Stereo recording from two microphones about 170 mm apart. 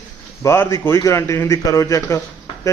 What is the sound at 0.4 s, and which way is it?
A man's voice, 15° left (ahead or behind).